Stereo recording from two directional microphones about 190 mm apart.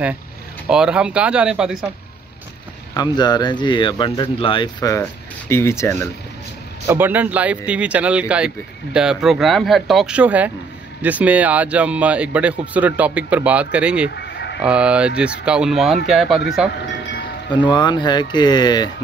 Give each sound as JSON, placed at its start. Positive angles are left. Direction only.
{"t": 0.7, "sound": "speech", "side_deg": -5}
{"t": 3.0, "sound": "speech", "side_deg": 20}
{"t": 6.9, "sound": "speech", "side_deg": -10}
{"t": 14.1, "sound": "a sound", "side_deg": 65}
{"t": 14.6, "sound": "speech", "side_deg": -5}
{"t": 17.5, "sound": "speech", "side_deg": 25}